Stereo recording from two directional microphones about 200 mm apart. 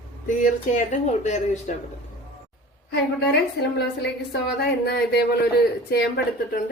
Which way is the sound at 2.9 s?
55° left (ahead or behind).